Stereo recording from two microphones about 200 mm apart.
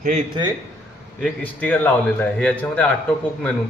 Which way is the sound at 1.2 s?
5° left (ahead or behind).